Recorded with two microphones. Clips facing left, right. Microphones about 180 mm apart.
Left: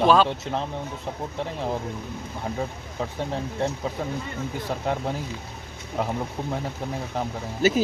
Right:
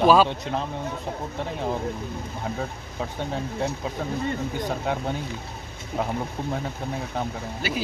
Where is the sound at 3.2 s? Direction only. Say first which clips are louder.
Left 1 dB; centre (ahead or behind).